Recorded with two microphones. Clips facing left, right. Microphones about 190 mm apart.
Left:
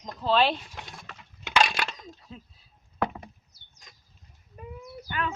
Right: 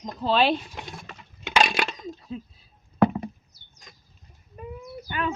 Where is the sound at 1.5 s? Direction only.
20° right (ahead or behind).